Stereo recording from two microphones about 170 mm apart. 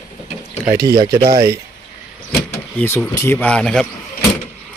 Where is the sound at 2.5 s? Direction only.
15° left (ahead or behind).